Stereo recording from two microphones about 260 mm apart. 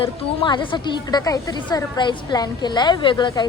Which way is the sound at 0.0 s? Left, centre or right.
Centre.